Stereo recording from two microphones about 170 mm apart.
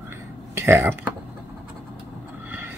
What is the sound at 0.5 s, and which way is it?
Speech, 15° right (ahead or behind).